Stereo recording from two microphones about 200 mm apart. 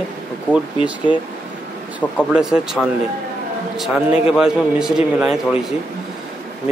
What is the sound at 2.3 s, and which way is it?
Speech, 5° right (ahead or behind).